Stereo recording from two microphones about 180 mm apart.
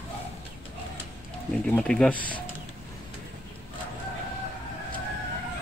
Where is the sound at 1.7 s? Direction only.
5° left (ahead or behind).